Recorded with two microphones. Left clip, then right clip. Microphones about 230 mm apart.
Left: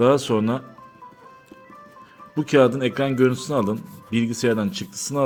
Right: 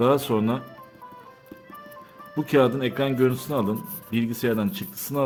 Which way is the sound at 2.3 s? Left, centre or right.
Centre.